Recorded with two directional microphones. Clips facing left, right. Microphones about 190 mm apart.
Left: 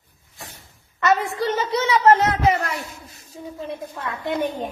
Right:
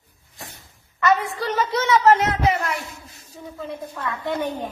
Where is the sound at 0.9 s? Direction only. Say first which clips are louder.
Even; 25° left (ahead or behind).